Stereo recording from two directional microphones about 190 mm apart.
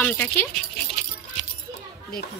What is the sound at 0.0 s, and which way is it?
Speech, 10° left (ahead or behind).